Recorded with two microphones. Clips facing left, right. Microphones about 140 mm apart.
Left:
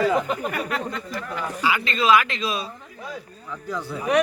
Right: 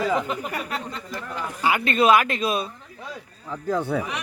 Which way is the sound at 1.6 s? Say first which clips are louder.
Right 3 dB; 55° right (ahead or behind).